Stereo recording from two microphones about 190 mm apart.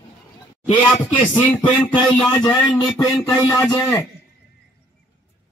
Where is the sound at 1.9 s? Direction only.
20° left (ahead or behind).